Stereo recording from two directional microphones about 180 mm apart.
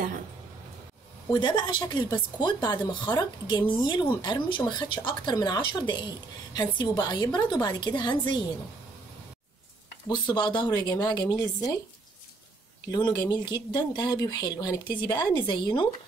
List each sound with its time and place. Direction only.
1.3 s speech: 25° left (ahead or behind)
10.0 s speech: 25° left (ahead or behind)
12.9 s speech: 25° left (ahead or behind)